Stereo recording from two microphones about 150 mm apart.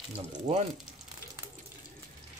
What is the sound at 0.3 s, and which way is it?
Speech, 50° right (ahead or behind).